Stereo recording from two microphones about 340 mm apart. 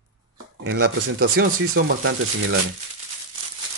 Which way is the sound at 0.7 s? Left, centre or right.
Right.